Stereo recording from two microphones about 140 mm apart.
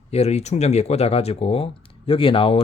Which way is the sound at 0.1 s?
50° left (ahead or behind).